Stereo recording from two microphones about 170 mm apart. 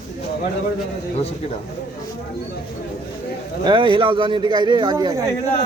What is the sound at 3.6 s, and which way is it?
Speech, 25° right (ahead or behind).